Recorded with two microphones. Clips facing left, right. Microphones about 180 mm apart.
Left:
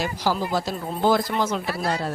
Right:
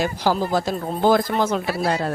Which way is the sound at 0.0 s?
50° right (ahead or behind).